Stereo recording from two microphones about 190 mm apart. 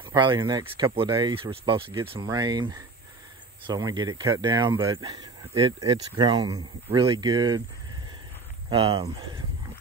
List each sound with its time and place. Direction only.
0.0 s speech: 25° right (ahead or behind)
8.6 s speech: 25° right (ahead or behind)